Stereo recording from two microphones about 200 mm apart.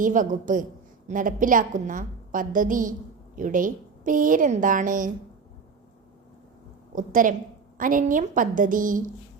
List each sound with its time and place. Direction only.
0.0 s a woman's voice: 40° right (ahead or behind)
6.9 s a woman's voice: 40° right (ahead or behind)